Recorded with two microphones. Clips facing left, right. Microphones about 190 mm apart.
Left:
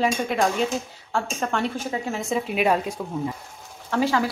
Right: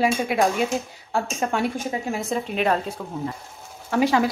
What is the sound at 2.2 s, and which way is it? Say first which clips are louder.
Speech: left 2 dB; 5° left (ahead or behind).